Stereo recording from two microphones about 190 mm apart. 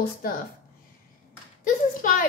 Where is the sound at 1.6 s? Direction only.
45° left (ahead or behind).